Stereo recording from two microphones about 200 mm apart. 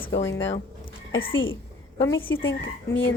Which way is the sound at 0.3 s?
70° left (ahead or behind).